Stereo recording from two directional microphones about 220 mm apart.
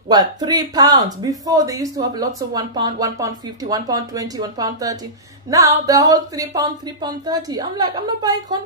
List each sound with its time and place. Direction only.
0.1 s speech: 20° right (ahead or behind)